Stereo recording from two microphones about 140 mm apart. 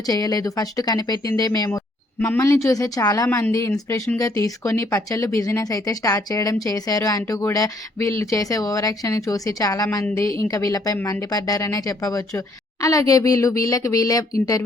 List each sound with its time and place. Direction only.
0.1 s speech: 25° left (ahead or behind)
3.2 s a woman's voice: 10° left (ahead or behind)
4.2 s speech: 25° left (ahead or behind)